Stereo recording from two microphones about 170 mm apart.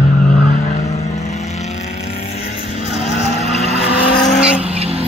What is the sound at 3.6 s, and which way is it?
Vehicle, 40° left (ahead or behind).